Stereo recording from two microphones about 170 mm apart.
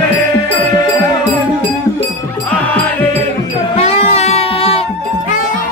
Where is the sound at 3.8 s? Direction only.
40° left (ahead or behind).